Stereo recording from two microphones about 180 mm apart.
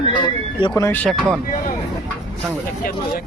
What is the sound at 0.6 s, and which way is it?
Speech, 15° left (ahead or behind).